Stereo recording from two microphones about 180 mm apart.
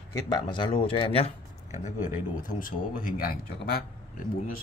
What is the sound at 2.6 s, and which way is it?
A man's voice, 50° left (ahead or behind).